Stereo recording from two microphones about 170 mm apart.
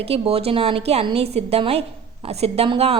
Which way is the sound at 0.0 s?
35° right (ahead or behind).